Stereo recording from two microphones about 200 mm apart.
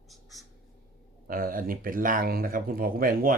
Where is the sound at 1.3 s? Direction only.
45° right (ahead or behind).